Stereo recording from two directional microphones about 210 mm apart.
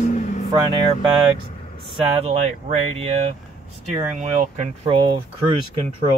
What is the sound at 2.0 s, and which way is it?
Speech, 25° right (ahead or behind).